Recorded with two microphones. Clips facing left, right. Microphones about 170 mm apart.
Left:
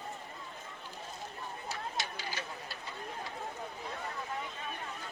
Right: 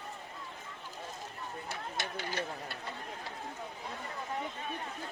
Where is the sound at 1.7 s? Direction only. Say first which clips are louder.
Left 1 dB; 55° right (ahead or behind).